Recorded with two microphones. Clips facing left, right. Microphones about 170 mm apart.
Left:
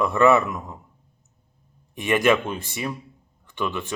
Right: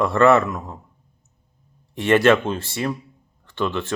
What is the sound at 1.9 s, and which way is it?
Speech, 15° left (ahead or behind).